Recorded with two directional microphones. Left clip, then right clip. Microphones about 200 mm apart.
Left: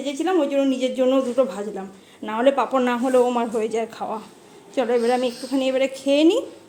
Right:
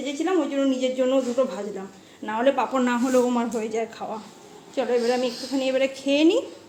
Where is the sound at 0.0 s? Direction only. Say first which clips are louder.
Left 3 dB; 25° left (ahead or behind).